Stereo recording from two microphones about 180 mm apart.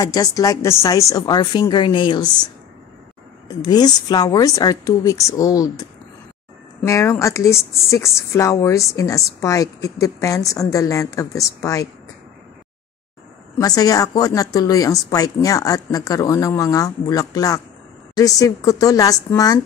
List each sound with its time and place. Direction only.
0.0 s a woman's voice: 20° left (ahead or behind)
3.4 s a woman's voice: 20° left (ahead or behind)
6.9 s speech: 15° left (ahead or behind)
13.6 s a woman's voice: 20° left (ahead or behind)